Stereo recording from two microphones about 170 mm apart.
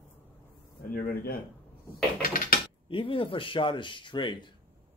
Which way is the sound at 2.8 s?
30° left (ahead or behind).